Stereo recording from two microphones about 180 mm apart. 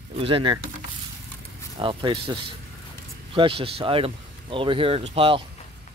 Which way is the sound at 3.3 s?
30° right (ahead or behind).